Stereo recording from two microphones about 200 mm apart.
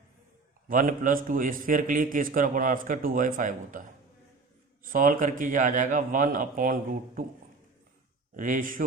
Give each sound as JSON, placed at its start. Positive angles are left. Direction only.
{"t": 0.7, "sound": "a man's voice", "side_deg": -40}
{"t": 4.9, "sound": "a man's voice", "side_deg": -45}
{"t": 8.4, "sound": "a man's voice", "side_deg": -40}